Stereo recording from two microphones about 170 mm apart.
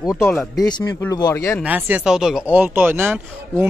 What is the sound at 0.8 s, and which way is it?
Speech, 15° left (ahead or behind).